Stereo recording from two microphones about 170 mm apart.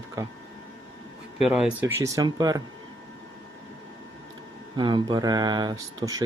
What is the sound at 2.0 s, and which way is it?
Speech, 25° right (ahead or behind).